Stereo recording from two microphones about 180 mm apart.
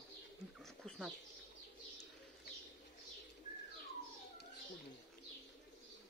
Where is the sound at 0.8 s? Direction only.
Centre (ahead or behind).